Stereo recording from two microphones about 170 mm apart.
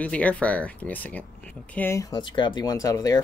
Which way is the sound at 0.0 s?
10° left (ahead or behind).